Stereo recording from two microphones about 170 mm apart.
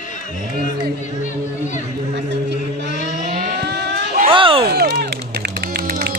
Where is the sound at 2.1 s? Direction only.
90° right.